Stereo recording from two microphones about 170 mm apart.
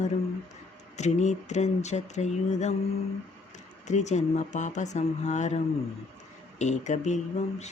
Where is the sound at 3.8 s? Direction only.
45° left (ahead or behind).